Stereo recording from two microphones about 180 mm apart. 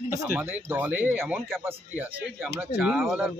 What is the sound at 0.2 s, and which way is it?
A man's voice, 10° right (ahead or behind).